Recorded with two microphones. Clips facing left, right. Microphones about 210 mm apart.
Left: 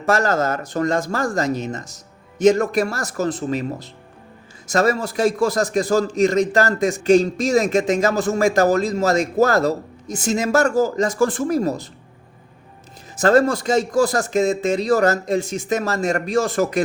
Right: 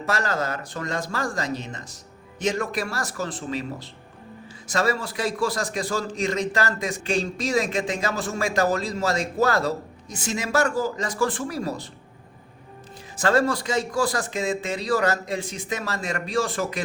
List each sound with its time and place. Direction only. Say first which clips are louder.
0.0 s a man's voice: left 7 dB; 45° left (ahead or behind)
13.1 s a man's voice: left 6 dB; 45° left (ahead or behind)